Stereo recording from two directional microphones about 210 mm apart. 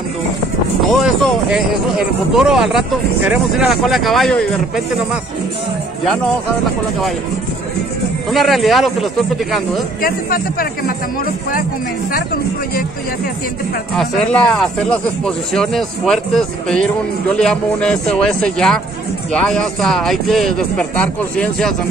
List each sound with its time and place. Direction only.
0.7 s a sound: centre (ahead or behind)
2.3 s speech: centre (ahead or behind)
8.3 s speech: centre (ahead or behind)
10.0 s speech: 45° left (ahead or behind)
13.9 s speech: 5° left (ahead or behind)